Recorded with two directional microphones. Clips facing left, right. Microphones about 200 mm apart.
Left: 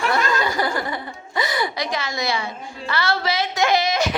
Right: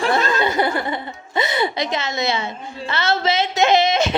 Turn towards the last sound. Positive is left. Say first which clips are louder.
# right 3 dB
turn(degrees=-25)  # may be behind; listen again after turning